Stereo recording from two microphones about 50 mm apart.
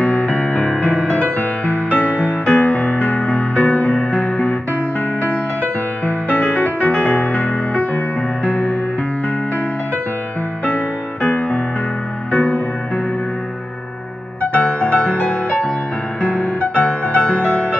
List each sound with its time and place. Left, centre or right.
0.0 s music: left
11.2 s music: left
14.4 s music: left